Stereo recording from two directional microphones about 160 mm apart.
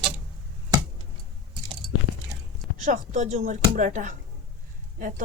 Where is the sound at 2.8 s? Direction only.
50° right (ahead or behind).